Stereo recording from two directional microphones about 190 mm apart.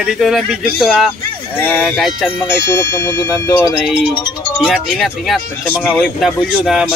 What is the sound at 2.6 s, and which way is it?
Speech, 15° left (ahead or behind).